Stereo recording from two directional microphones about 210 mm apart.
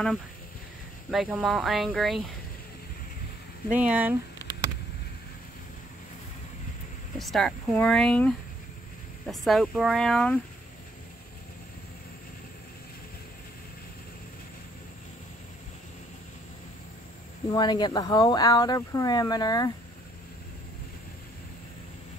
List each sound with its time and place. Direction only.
1.1 s speech: 5° right (ahead or behind)
3.7 s speech: 5° right (ahead or behind)
7.2 s speech: centre (ahead or behind)
17.5 s speech: 20° left (ahead or behind)